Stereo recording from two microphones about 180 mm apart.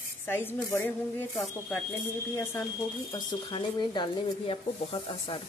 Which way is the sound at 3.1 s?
25° left (ahead or behind).